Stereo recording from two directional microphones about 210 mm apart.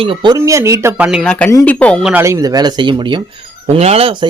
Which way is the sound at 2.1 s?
15° right (ahead or behind).